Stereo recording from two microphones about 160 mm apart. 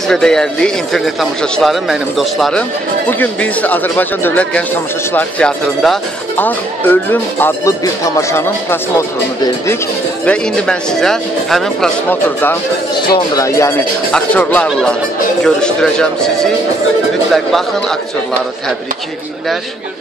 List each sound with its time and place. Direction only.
0.1 s speech: 5° left (ahead or behind)
3.1 s speech: 10° left (ahead or behind)
10.2 s speech: 5° left (ahead or behind)
12.9 s speech: 25° left (ahead or behind)
14.1 s speech: 5° left (ahead or behind)